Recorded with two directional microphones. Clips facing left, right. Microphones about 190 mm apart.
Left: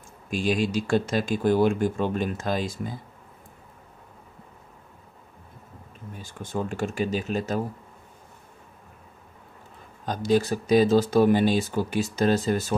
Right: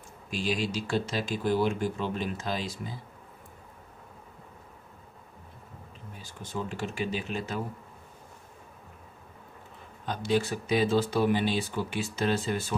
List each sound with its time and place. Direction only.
0.3 s speech: 50° left (ahead or behind)
6.1 s speech: 50° left (ahead or behind)
10.0 s speech: 40° left (ahead or behind)